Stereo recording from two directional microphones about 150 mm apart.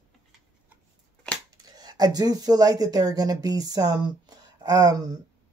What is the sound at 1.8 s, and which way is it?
Speech, 25° right (ahead or behind).